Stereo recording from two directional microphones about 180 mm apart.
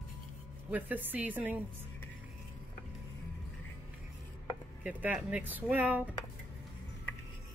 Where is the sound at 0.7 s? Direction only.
10° right (ahead or behind).